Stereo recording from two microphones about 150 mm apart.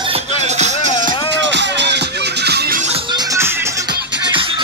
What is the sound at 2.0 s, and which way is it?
Music, 90° right.